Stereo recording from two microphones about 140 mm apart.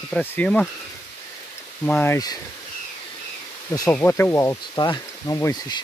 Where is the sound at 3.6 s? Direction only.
25° left (ahead or behind).